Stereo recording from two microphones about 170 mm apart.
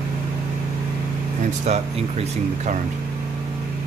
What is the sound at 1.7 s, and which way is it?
Speech, 45° right (ahead or behind).